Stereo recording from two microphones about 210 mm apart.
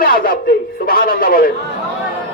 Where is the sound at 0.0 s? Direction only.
45° left (ahead or behind).